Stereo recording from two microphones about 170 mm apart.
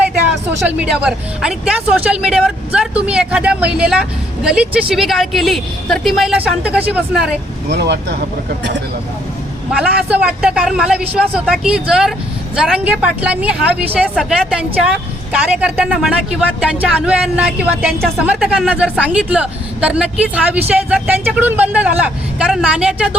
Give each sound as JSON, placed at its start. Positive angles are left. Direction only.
{"t": 0.8, "sound": "speech", "side_deg": -5}
{"t": 7.7, "sound": "speech", "side_deg": -75}
{"t": 9.7, "sound": "a woman's voice", "side_deg": -5}